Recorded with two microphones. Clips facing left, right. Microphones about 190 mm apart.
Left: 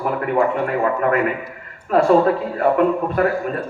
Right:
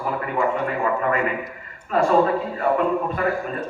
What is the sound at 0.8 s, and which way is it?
A man's voice, 50° left (ahead or behind).